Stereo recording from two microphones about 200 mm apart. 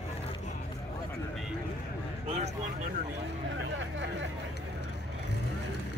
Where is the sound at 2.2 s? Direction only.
30° right (ahead or behind).